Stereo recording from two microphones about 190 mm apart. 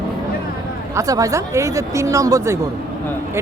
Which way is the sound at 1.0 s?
20° right (ahead or behind).